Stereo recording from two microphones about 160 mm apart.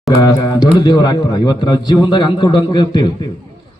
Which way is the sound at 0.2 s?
25° left (ahead or behind).